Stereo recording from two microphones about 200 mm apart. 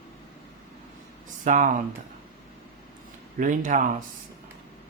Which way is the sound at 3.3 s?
40° right (ahead or behind).